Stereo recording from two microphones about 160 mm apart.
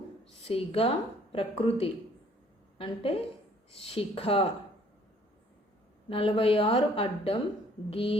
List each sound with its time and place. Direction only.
0.4 s a woman's voice: 35° left (ahead or behind)
6.1 s a woman's voice: 35° left (ahead or behind)